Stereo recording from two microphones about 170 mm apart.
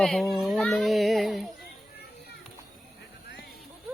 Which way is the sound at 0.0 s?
Centre (ahead or behind).